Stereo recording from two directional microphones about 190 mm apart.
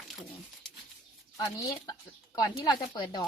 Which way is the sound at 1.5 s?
20° left (ahead or behind).